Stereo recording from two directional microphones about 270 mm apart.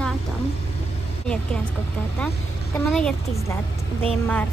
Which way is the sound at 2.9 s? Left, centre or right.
Centre.